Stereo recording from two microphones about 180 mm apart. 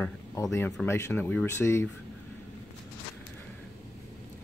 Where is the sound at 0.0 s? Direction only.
15° left (ahead or behind).